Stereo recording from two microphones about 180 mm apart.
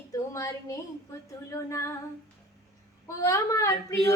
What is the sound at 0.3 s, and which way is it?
Female singing, 15° left (ahead or behind).